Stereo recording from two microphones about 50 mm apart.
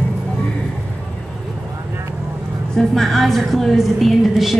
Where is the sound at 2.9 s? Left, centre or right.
Centre.